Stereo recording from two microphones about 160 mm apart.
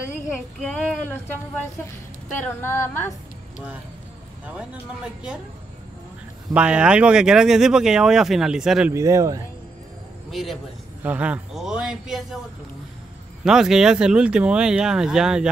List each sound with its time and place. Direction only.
0.6 s speech: 5° left (ahead or behind)
4.5 s speech: 5° right (ahead or behind)
6.5 s speech: 5° right (ahead or behind)
8.9 s speech: 20° right (ahead or behind)
10.3 s speech: centre (ahead or behind)
13.4 s speech: 5° right (ahead or behind)